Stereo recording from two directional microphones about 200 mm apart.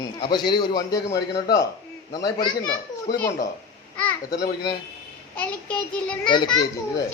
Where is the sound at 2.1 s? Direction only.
20° left (ahead or behind).